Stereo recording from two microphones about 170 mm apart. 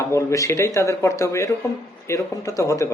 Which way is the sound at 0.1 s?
20° left (ahead or behind).